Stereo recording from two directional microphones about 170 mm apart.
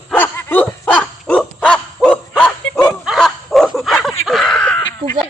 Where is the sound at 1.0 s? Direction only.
5° left (ahead or behind).